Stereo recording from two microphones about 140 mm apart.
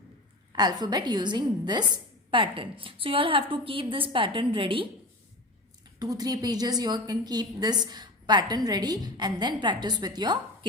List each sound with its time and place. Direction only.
0.5 s a woman's voice: 30° right (ahead or behind)
6.0 s a woman's voice: 25° right (ahead or behind)